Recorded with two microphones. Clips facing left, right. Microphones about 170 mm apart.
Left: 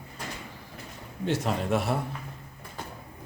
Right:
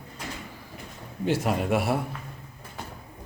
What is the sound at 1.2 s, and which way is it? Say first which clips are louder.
Speech: right 3 dB; 5° right (ahead or behind).